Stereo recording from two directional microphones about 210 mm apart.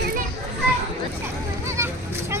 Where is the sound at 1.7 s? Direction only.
10° right (ahead or behind).